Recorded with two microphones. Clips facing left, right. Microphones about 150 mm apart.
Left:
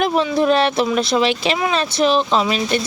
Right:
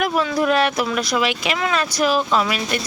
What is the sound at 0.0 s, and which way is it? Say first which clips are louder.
Speech: left 3 dB; 25° left (ahead or behind).